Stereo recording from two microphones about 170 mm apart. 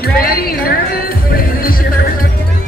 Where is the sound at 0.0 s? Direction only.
60° left (ahead or behind).